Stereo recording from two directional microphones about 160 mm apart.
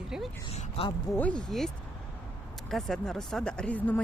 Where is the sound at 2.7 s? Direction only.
5° left (ahead or behind).